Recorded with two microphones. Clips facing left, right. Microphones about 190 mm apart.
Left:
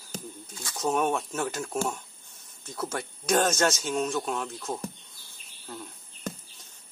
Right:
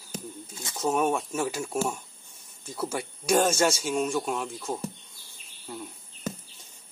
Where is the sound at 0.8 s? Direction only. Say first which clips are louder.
Right 1 dB; 5° right (ahead or behind).